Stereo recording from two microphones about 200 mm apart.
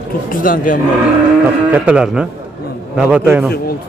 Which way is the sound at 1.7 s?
5° right (ahead or behind).